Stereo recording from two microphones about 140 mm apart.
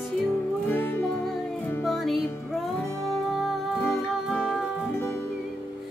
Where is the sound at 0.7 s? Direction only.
10° left (ahead or behind).